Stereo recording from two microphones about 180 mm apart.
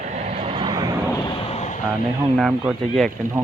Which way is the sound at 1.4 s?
35° left (ahead or behind).